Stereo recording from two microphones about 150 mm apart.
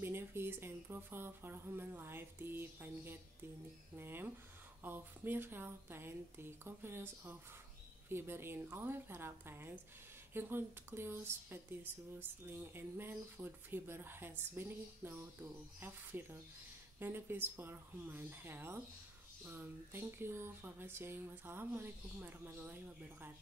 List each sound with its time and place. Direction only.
0.0 s speech: 15° right (ahead or behind)